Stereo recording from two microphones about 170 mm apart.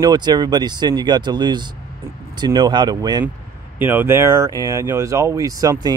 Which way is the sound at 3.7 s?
10° right (ahead or behind).